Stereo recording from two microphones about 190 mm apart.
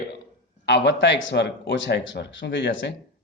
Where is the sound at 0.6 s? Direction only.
65° left (ahead or behind).